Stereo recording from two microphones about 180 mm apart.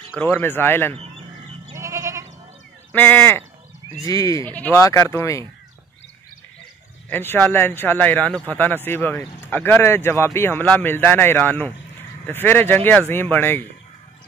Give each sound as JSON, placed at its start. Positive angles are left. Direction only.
{"t": 0.2, "sound": "speech", "side_deg": 10}
{"t": 1.8, "sound": "goat", "side_deg": -15}
{"t": 2.9, "sound": "speech", "side_deg": 10}
{"t": 7.1, "sound": "speech", "side_deg": 10}